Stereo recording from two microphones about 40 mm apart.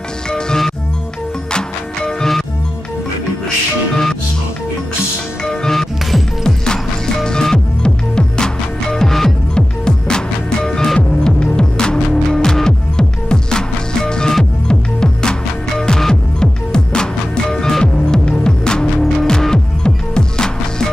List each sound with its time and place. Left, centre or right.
0.3 s music: centre
3.9 s music: centre
5.4 s music: centre
8.9 s music: centre